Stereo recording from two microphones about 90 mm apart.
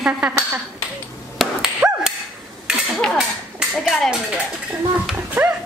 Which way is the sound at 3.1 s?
5° right (ahead or behind).